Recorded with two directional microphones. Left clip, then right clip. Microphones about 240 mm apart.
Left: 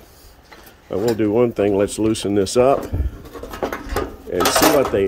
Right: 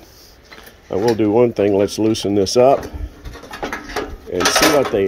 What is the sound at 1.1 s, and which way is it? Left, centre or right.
Speech, centre.